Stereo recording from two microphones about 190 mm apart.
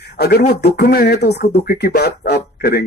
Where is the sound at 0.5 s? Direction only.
60° left (ahead or behind).